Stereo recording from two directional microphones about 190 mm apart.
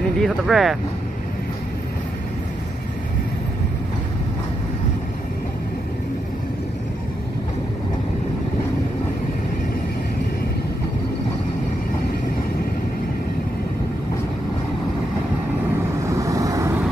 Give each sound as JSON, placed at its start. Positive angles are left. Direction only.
{"t": 0.2, "sound": "speech", "side_deg": 0}
{"t": 16.1, "sound": "vehicle", "side_deg": -15}